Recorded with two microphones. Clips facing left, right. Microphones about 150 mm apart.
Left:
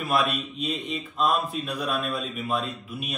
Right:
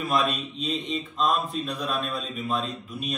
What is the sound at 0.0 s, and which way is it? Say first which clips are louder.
A man's voice: even; 5° left (ahead or behind).